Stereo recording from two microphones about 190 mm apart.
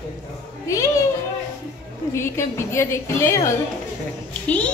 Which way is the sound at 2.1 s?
15° left (ahead or behind).